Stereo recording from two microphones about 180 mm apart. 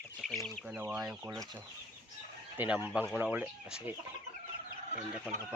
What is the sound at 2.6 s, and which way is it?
Speech, 10° right (ahead or behind).